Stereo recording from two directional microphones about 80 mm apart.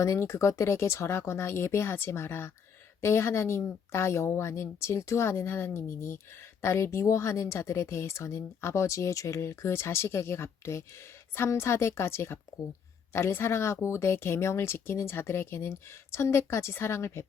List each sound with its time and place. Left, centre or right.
0.0 s speech: left